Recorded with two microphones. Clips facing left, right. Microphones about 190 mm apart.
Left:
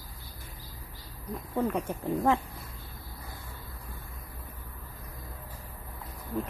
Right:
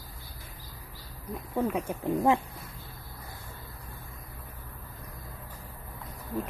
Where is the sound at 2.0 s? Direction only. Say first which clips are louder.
Right 2 dB; 15° right (ahead or behind).